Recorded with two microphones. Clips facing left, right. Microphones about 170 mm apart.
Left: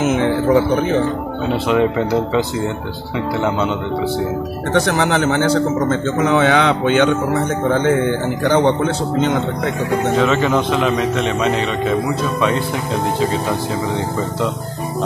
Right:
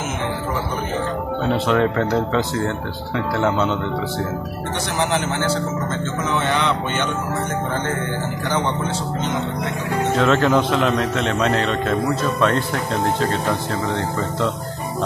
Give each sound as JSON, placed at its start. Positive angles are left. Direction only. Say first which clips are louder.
{"t": 0.0, "sound": "music", "louder": "left 9 dB", "side_deg": 65}
{"t": 1.7, "sound": "a man's voice", "louder": "left 4 dB", "side_deg": 5}
{"t": 4.7, "sound": "a man's voice", "louder": "left 6 dB", "side_deg": 75}
{"t": 10.1, "sound": "a man's voice", "louder": "right 1 dB", "side_deg": 0}